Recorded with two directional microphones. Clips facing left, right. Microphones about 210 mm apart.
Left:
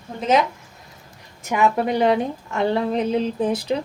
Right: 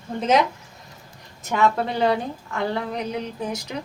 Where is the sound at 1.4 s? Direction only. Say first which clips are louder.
Left 2 dB; 15° left (ahead or behind); by 3.7 s 30° left (ahead or behind).